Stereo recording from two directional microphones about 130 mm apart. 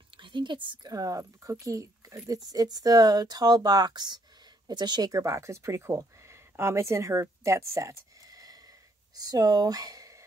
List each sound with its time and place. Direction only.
0.2 s speech: 35° right (ahead or behind)